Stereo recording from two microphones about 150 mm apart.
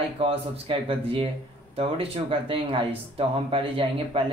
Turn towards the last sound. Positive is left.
turn(degrees=-35)  # may be behind; listen again after turning